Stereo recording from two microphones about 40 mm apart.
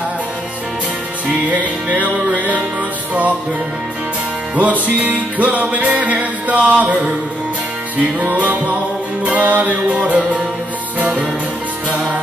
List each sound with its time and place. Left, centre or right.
1.5 s music: right
4.6 s music: right
8.3 s music: right